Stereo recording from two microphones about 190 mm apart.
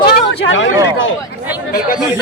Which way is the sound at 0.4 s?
85° left.